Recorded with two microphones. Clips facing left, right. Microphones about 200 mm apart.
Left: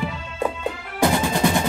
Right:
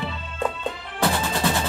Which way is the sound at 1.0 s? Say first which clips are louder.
Left 4 dB; 15° left (ahead or behind).